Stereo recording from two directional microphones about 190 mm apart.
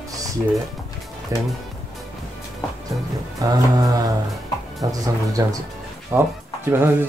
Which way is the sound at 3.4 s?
20° right (ahead or behind).